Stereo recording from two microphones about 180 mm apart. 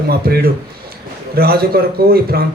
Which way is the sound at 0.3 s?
60° right (ahead or behind).